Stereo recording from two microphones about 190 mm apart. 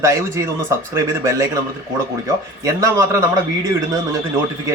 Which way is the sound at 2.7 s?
15° right (ahead or behind).